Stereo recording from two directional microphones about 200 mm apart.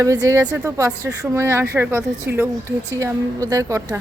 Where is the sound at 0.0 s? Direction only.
15° right (ahead or behind).